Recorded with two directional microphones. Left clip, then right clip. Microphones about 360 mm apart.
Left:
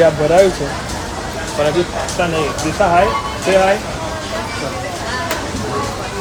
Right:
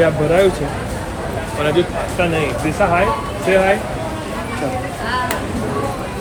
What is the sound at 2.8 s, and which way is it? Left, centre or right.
Speech, centre.